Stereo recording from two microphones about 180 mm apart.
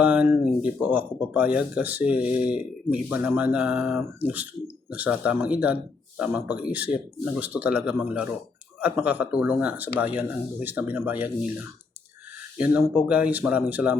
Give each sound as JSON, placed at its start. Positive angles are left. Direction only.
{"t": 0.0, "sound": "speech", "side_deg": -5}
{"t": 12.7, "sound": "speech", "side_deg": -5}